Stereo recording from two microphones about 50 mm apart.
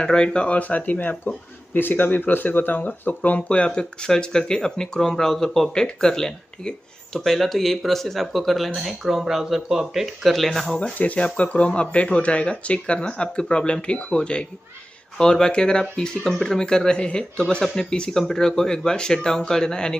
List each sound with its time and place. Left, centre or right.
0.0 s speech: centre
10.3 s speech: centre
10.8 s speech: left